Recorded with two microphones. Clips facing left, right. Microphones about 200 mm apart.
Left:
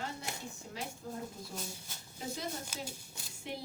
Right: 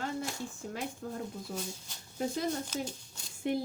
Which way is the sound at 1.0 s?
55° right (ahead or behind).